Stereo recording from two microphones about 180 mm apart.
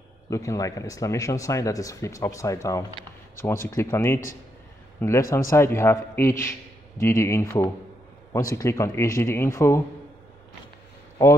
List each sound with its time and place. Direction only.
0.3 s speech: 15° left (ahead or behind)